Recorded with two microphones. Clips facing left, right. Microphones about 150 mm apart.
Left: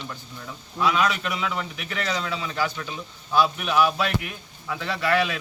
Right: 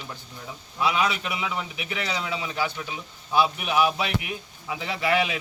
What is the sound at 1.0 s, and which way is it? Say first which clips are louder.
A man's voice: left 2 dB; 15° right (ahead or behind).